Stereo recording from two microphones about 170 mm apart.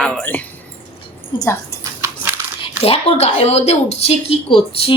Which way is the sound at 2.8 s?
35° left (ahead or behind).